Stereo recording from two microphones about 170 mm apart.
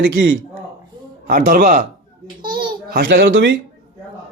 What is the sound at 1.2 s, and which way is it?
Speech, 50° right (ahead or behind).